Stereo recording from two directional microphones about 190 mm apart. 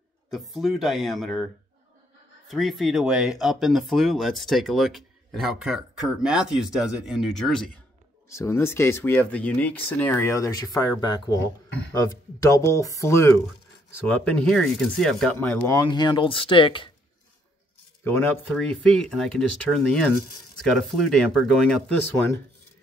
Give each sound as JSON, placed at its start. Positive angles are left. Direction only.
{"t": 0.3, "sound": "speech", "side_deg": 0}
{"t": 2.4, "sound": "speech", "side_deg": 0}
{"t": 8.3, "sound": "speech", "side_deg": 15}
{"t": 15.9, "sound": "speech", "side_deg": 25}
{"t": 18.0, "sound": "speech", "side_deg": 10}